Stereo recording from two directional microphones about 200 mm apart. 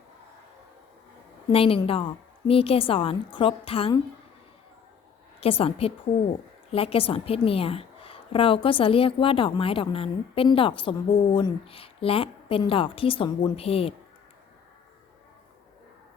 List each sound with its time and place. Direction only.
1.5 s a woman's voice: 30° left (ahead or behind)
5.4 s a woman's voice: 30° left (ahead or behind)